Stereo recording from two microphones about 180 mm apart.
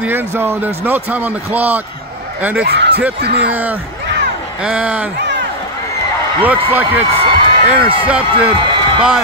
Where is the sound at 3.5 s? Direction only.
10° right (ahead or behind).